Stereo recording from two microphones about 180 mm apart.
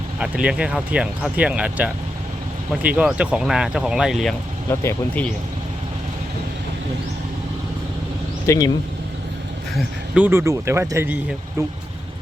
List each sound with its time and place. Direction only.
0.2 s speech: 5° right (ahead or behind)
4.7 s speech: 15° left (ahead or behind)
8.4 s speech: 20° left (ahead or behind)
9.7 s speech: 10° right (ahead or behind)